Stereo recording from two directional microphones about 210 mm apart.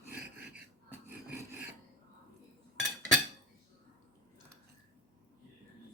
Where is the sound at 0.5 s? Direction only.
10° right (ahead or behind).